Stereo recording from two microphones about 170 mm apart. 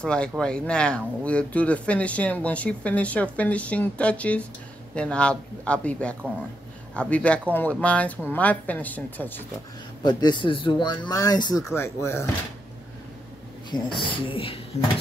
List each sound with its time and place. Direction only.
0.0 s speech: 5° left (ahead or behind)
10.0 s speech: 25° left (ahead or behind)
13.7 s speech: 30° left (ahead or behind)